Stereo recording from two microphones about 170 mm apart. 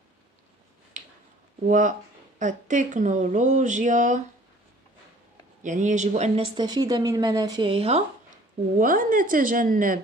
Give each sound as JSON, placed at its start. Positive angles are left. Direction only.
{"t": 1.0, "sound": "a sound", "side_deg": -45}
{"t": 1.7, "sound": "speech", "side_deg": -50}
{"t": 5.6, "sound": "speech", "side_deg": -45}
{"t": 6.5, "sound": "a woman's voice", "side_deg": -25}
{"t": 8.7, "sound": "speech", "side_deg": -50}